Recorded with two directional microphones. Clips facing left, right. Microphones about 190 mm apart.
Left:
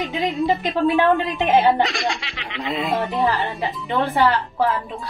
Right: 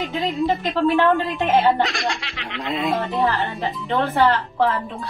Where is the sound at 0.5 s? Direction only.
15° left (ahead or behind).